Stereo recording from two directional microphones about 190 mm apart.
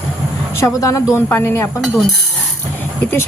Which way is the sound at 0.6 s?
15° left (ahead or behind).